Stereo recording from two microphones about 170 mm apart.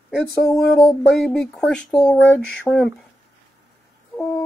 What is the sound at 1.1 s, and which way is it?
Speech, 5° left (ahead or behind).